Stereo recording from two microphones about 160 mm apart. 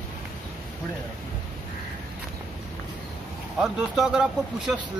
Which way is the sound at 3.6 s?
5° right (ahead or behind).